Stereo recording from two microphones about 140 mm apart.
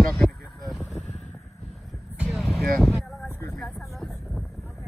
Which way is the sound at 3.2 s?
15° left (ahead or behind).